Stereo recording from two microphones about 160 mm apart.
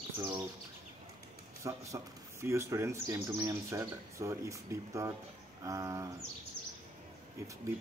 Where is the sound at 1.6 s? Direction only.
20° right (ahead or behind).